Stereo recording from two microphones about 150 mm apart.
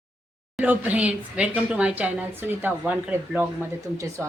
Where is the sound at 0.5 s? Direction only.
10° right (ahead or behind).